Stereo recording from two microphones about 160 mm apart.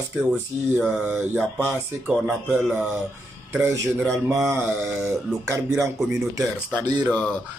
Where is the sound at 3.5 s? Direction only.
15° right (ahead or behind).